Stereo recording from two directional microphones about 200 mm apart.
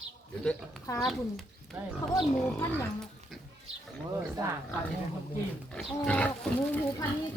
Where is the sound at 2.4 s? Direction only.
5° left (ahead or behind).